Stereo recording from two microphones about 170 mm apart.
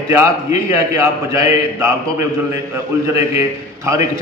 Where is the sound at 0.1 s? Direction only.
15° right (ahead or behind).